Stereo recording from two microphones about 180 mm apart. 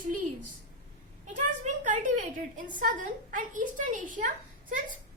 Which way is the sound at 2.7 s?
45° right (ahead or behind).